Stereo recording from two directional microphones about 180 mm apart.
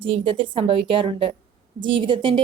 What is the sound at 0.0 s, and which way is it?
A woman's voice, 30° right (ahead or behind).